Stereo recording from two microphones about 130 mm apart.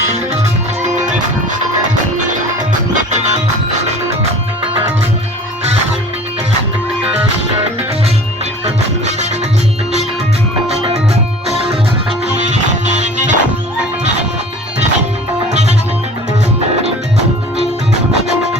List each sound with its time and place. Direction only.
0.1 s music: 60° right (ahead or behind)
2.9 s music: 65° right (ahead or behind)
10.7 s music: 50° right (ahead or behind)
13.0 s music: 70° right (ahead or behind)